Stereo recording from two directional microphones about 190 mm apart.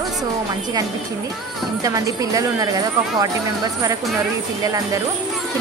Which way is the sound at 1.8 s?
20° right (ahead or behind).